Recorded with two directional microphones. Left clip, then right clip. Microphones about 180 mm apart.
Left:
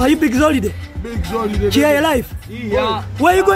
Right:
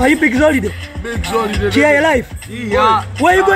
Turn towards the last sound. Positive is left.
turn(degrees=10)  # may be behind; listen again after turning